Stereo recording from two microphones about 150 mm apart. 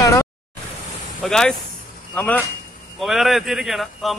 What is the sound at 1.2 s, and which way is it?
Speech, 5° left (ahead or behind).